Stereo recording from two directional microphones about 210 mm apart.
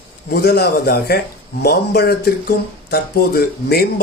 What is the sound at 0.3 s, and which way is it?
Speech, 50° left (ahead or behind).